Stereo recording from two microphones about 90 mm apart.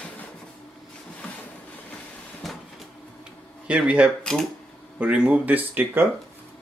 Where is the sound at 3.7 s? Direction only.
10° right (ahead or behind).